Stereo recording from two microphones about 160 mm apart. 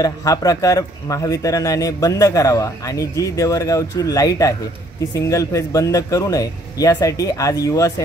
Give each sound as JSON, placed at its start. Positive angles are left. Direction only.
{"t": 0.0, "sound": "a man's voice", "side_deg": 20}